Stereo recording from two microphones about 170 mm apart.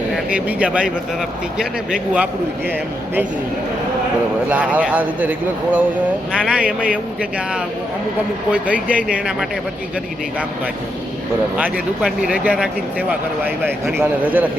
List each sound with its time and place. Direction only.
0.3 s speech: 10° right (ahead or behind)
4.4 s speech: 10° right (ahead or behind)
11.5 s speech: 5° right (ahead or behind)